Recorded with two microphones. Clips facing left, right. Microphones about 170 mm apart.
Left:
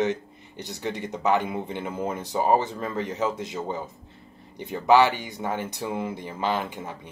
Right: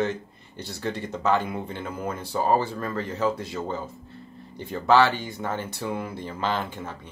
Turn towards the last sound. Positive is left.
turn(degrees=15)  # may be behind; listen again after turning